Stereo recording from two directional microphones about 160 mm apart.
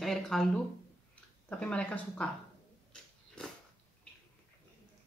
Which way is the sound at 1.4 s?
5° left (ahead or behind).